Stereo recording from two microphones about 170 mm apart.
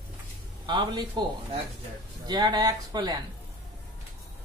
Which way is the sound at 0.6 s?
25° right (ahead or behind).